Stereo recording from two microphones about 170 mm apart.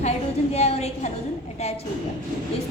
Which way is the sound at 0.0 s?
40° left (ahead or behind).